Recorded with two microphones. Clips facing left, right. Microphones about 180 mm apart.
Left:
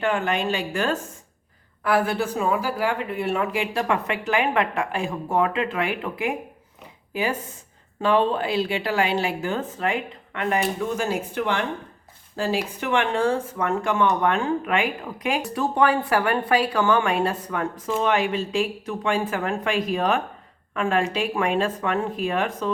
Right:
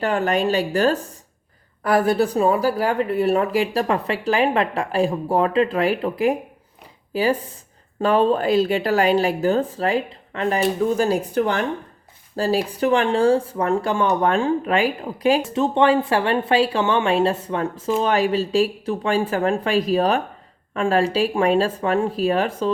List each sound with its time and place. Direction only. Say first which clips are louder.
0.0 s speech: right 4 dB; 35° right (ahead or behind)
15.4 s speech: right 3 dB; 25° right (ahead or behind)